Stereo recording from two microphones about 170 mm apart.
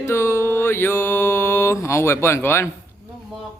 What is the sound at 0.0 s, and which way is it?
Mantra, 15° left (ahead or behind).